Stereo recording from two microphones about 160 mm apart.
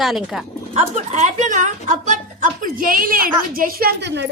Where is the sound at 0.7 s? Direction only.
45° right (ahead or behind).